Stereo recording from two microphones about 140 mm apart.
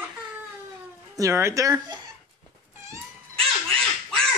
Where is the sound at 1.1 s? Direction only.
20° right (ahead or behind).